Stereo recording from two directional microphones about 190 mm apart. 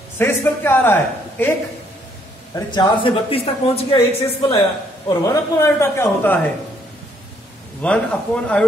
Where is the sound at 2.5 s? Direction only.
25° left (ahead or behind).